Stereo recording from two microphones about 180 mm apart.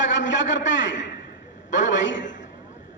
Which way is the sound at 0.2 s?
90° left.